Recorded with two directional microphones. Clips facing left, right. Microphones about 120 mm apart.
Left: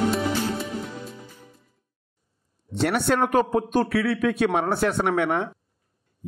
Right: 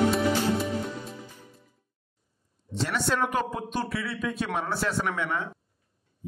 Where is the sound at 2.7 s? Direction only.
60° left (ahead or behind).